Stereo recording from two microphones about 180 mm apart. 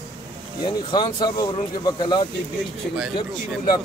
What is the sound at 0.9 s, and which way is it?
Speech, 25° left (ahead or behind).